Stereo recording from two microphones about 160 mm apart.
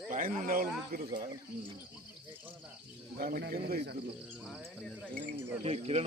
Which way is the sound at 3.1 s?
70° right (ahead or behind).